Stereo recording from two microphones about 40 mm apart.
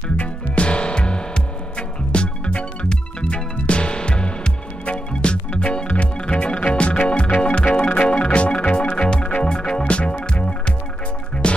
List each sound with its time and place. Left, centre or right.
0.2 s music: left